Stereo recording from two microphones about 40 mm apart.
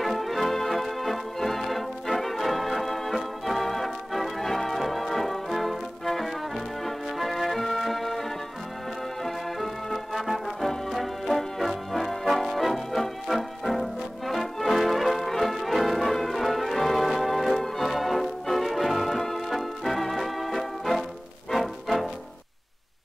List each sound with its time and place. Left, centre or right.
0.0 s organ: centre
9.2 s music: centre
10.9 s brass instrument: centre
19.5 s music: centre